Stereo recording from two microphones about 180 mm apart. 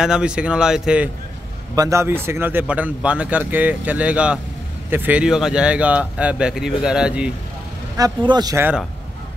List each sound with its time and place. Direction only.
0.0 s speech: 5° right (ahead or behind)
1.8 s a man's voice: 15° right (ahead or behind)
8.0 s speech: 25° right (ahead or behind)